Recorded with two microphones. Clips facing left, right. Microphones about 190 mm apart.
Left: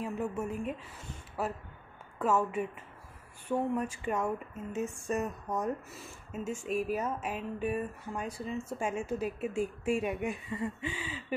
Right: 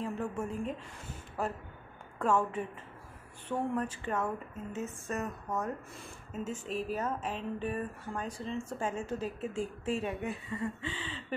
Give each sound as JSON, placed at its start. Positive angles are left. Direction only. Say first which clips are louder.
{"t": 0.0, "sound": "a woman's voice", "louder": "left 1 dB", "side_deg": 10}
{"t": 5.9, "sound": "speech", "louder": "even", "side_deg": 5}